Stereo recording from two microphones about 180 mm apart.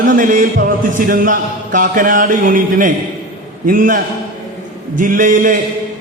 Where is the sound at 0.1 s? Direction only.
50° right (ahead or behind).